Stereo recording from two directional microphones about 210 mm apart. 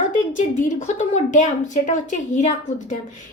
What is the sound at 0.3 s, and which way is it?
A woman's voice, 35° left (ahead or behind).